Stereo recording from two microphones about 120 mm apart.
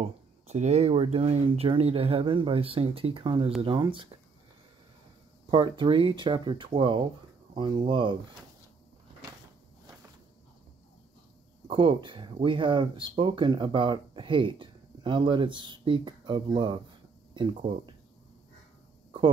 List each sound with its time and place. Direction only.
0.0 s speech: 65° right (ahead or behind); by 4.2 s 45° right (ahead or behind)
5.5 s speech: 35° right (ahead or behind)
11.7 s speech: 45° right (ahead or behind)
17.6 s speech: 50° right (ahead or behind)